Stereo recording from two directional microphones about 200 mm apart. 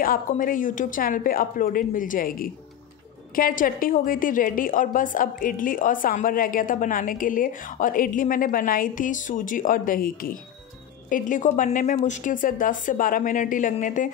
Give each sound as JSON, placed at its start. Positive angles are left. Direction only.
{"t": 0.0, "sound": "a woman's voice", "side_deg": 45}